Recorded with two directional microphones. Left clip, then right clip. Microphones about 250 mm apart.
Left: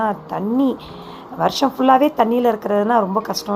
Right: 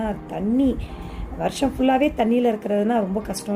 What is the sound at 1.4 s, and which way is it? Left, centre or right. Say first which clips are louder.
A woman's voice: left 5 dB; centre.